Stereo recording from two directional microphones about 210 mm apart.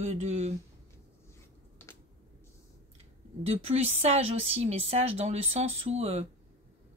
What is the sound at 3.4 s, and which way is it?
Speech, 30° right (ahead or behind).